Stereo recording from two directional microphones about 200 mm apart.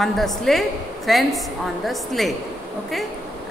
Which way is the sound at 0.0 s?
Centre (ahead or behind).